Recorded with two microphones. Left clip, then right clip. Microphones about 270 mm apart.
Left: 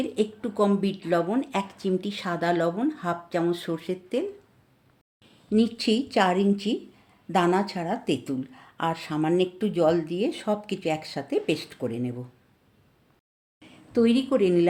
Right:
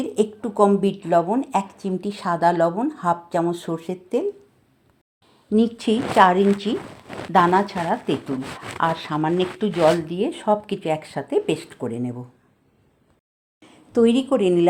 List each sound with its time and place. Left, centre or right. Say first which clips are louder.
0.0 s speech: right 5 dB; centre
5.5 s speech: right 4 dB; centre
13.6 s a sound: right 5 dB; right
14.2 s speech: right 3 dB; centre